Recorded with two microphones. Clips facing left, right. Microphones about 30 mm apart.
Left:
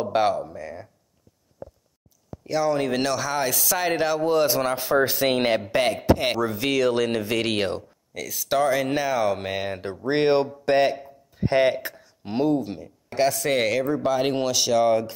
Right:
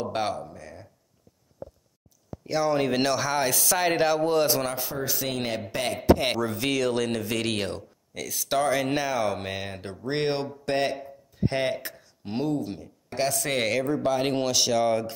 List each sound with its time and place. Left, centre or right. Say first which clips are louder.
0.0 s speech: left 6 dB; centre
2.4 s speech: left 1 dB; centre
4.9 s speech: left 9 dB; left
5.7 s a man's voice: left 7 dB; left
5.9 s speech: left 1 dB; centre
8.1 s speech: left 3 dB; centre